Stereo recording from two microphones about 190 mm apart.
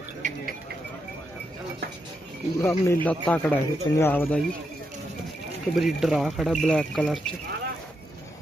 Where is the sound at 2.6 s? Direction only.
10° left (ahead or behind).